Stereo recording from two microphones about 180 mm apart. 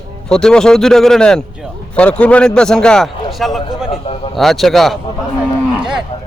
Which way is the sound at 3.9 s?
30° left (ahead or behind).